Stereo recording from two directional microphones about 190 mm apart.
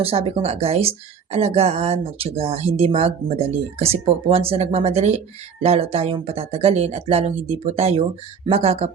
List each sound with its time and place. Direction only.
0.0 s a woman's voice: 30° right (ahead or behind)